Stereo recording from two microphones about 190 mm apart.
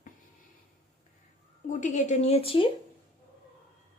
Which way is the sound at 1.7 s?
40° left (ahead or behind).